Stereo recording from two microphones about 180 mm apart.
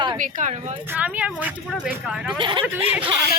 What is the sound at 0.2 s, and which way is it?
Speech, 45° right (ahead or behind).